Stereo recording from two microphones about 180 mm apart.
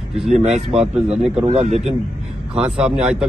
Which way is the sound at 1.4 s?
35° right (ahead or behind).